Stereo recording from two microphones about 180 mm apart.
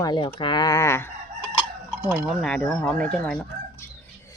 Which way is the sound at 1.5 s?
10° right (ahead or behind).